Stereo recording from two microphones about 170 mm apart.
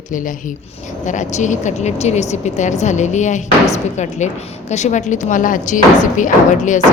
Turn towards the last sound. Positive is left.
turn(degrees=45)  # may be behind; listen again after turning